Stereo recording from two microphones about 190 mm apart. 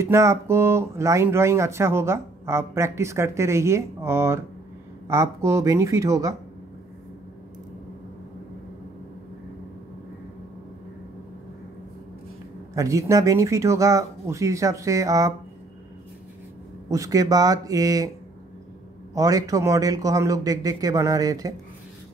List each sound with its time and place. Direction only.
0.0 s speech: 15° right (ahead or behind)
12.7 s speech: 15° right (ahead or behind)
16.9 s speech: 20° right (ahead or behind)
19.1 s speech: 20° right (ahead or behind)